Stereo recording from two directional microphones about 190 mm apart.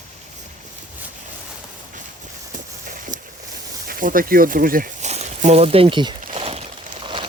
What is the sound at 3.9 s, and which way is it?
Speech, 45° right (ahead or behind).